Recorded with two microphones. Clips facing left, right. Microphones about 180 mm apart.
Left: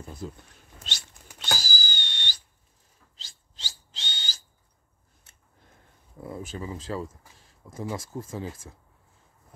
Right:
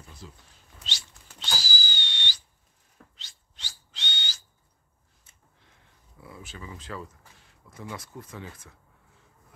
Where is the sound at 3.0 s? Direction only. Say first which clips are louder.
Right 10 dB; 65° right (ahead or behind).